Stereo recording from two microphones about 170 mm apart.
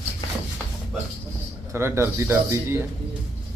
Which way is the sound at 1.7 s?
15° right (ahead or behind).